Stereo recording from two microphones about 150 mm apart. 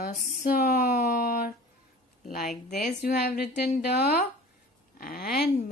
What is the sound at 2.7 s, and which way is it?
A woman's voice, 85° left.